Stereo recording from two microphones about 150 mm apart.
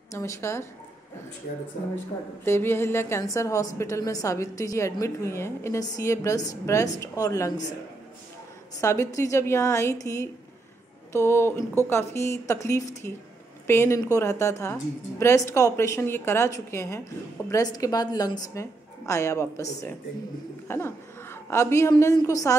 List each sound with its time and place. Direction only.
0.1 s a woman's voice: 20° left (ahead or behind)
2.4 s a woman's voice: 15° left (ahead or behind)
8.8 s a woman's voice: 20° left (ahead or behind)